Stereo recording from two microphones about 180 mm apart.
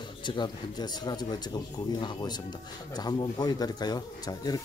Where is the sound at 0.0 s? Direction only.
25° left (ahead or behind).